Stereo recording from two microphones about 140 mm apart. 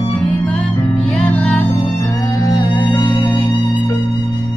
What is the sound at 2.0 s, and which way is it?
Music, 25° left (ahead or behind).